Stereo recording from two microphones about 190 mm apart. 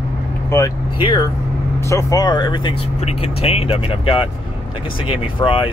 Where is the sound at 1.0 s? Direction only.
25° left (ahead or behind).